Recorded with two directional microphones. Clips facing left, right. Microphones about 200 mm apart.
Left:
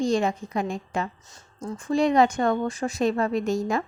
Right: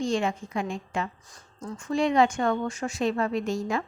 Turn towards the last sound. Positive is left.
turn(degrees=40)  # may be behind; listen again after turning